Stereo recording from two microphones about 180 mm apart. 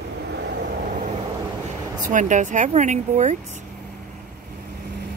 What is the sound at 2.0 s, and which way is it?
Speech, 45° right (ahead or behind).